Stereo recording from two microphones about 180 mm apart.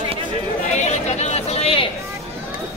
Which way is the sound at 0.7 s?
40° left (ahead or behind).